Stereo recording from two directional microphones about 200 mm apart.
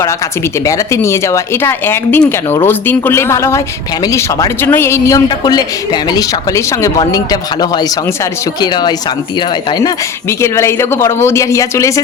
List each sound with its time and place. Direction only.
0.6 s a man's voice: 15° left (ahead or behind)